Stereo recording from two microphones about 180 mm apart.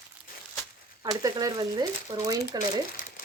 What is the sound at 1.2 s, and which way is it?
Speech, 20° right (ahead or behind).